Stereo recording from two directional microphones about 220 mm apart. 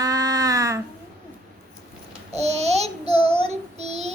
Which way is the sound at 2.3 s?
30° right (ahead or behind).